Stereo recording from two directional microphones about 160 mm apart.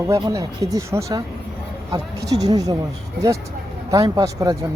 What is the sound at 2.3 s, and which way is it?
Speech, 25° right (ahead or behind).